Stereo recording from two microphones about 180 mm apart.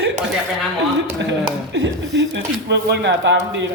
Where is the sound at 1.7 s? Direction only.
75° right (ahead or behind).